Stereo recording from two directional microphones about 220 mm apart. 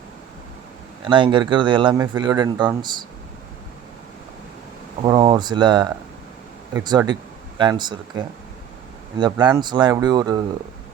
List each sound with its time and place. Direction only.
1.0 s speech: 20° right (ahead or behind)
5.0 s speech: 20° right (ahead or behind)